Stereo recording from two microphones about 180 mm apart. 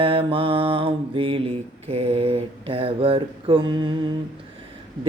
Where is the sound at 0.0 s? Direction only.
30° right (ahead or behind).